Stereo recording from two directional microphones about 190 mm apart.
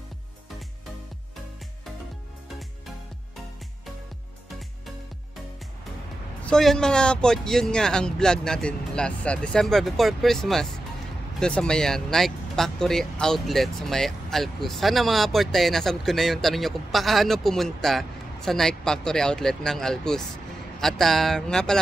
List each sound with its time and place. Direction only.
6.4 s speech: 5° left (ahead or behind)